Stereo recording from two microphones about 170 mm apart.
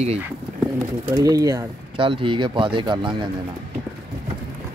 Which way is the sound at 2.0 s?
30° right (ahead or behind).